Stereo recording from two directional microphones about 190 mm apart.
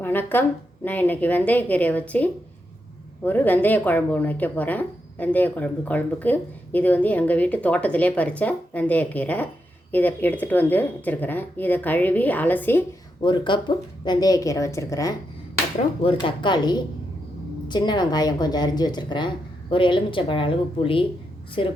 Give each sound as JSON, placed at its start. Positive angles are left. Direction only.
{"t": 0.0, "sound": "speech", "side_deg": 10}
{"t": 13.2, "sound": "a woman's voice", "side_deg": 25}